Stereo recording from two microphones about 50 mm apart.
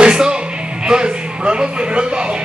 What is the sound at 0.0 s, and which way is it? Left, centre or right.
Music, centre.